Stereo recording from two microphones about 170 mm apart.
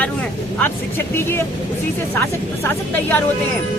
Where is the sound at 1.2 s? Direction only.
15° left (ahead or behind).